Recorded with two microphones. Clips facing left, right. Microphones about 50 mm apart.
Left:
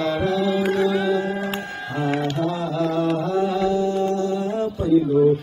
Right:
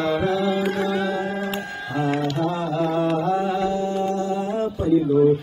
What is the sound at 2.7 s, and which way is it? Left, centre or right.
Mantra, centre.